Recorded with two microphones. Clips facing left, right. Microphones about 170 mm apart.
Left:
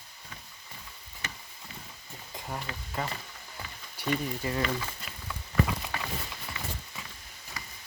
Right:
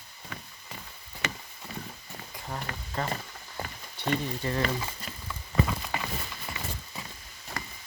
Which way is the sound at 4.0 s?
10° left (ahead or behind).